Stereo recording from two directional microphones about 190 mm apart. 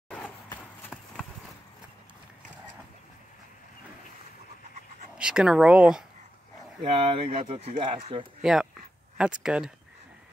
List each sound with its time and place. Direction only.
0.1 s a sound: 10° left (ahead or behind)
5.1 s speech: 5° right (ahead or behind)
6.8 s speech: 30° right (ahead or behind)
8.4 s speech: 5° right (ahead or behind)